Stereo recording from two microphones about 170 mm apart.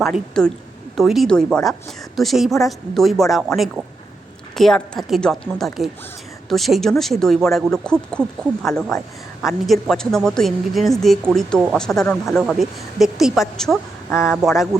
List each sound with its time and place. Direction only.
0.4 s speech: 5° left (ahead or behind)